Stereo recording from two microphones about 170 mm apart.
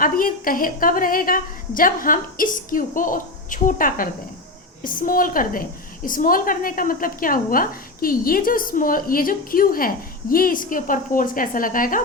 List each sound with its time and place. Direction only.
0.0 s a woman's voice: 55° left (ahead or behind)